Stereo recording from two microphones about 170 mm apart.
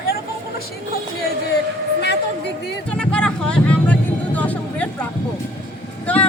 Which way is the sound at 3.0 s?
5° left (ahead or behind).